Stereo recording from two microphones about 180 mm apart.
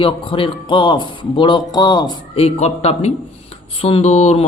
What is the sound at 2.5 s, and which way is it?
A man's voice, 35° left (ahead or behind).